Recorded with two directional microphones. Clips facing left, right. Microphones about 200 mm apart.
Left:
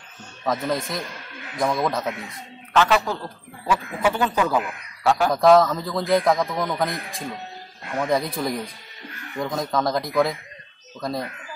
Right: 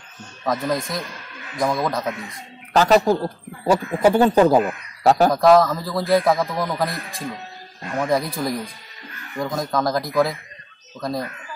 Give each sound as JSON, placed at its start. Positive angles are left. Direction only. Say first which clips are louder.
{"t": 0.5, "sound": "a man's voice", "louder": "right 2 dB", "side_deg": 0}
{"t": 2.7, "sound": "speech", "louder": "right 5 dB", "side_deg": -40}
{"t": 5.3, "sound": "a man's voice", "louder": "right 1 dB", "side_deg": 0}